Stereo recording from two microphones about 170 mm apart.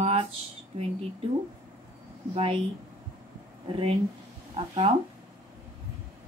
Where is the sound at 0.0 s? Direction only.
35° right (ahead or behind).